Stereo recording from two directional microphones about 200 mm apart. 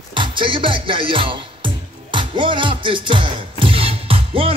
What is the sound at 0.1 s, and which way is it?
Music, 25° right (ahead or behind).